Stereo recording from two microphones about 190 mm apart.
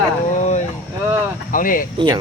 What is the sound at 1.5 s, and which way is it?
Speech, 45° left (ahead or behind).